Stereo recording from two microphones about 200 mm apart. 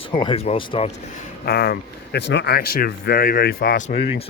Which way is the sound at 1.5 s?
50° left (ahead or behind).